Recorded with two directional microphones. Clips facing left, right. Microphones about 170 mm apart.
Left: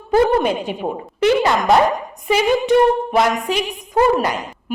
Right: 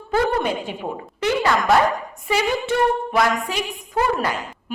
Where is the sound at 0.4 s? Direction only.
20° left (ahead or behind).